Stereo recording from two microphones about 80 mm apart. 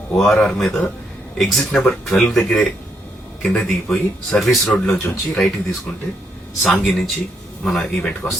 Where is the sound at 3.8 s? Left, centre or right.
Centre.